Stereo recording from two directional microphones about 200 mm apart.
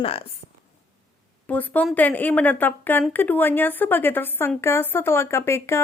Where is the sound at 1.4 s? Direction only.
10° left (ahead or behind).